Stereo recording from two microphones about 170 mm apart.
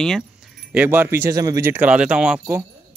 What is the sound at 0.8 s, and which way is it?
Speech, 10° right (ahead or behind).